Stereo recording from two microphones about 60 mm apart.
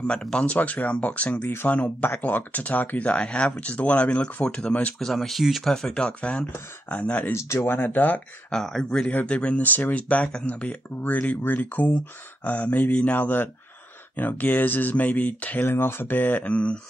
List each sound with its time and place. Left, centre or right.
0.0 s speech: centre
0.6 s speech: left
3.1 s speech: centre
4.9 s speech: centre; by 7.3 s left
7.3 s speech: left
7.6 s speech: left
8.5 s speech: centre
9.0 s speech: left
13.2 s speech: left
15.6 s speech: left